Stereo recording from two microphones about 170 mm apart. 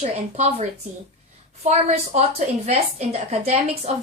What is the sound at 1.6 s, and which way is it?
A woman's voice, 40° right (ahead or behind).